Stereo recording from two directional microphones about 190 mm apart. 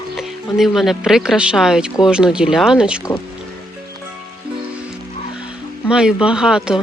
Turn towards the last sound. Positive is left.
turn(degrees=-5)  # may be behind; listen again after turning